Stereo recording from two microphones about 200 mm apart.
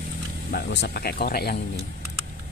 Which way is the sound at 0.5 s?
55° left (ahead or behind).